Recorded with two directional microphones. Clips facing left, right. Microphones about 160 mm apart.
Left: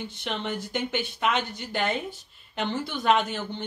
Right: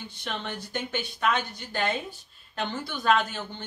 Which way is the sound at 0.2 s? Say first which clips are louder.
Left 3 dB; 15° left (ahead or behind).